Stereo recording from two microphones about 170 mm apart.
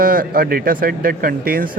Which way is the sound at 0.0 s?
55° right (ahead or behind).